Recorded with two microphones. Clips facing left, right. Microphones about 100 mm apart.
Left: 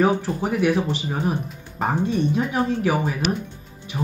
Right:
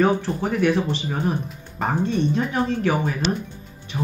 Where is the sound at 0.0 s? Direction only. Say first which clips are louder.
Even; 10° left (ahead or behind).